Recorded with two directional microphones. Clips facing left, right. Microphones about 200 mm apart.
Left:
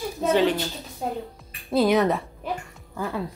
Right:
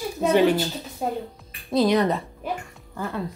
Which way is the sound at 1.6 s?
5° left (ahead or behind).